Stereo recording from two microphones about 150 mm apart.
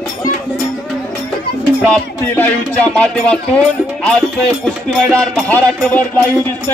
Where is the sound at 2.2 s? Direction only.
10° left (ahead or behind).